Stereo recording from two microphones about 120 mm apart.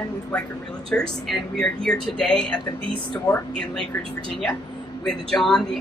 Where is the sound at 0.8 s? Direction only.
5° left (ahead or behind).